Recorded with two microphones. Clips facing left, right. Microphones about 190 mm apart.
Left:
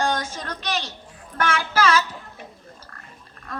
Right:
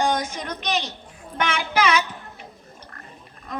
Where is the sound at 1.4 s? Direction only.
20° right (ahead or behind).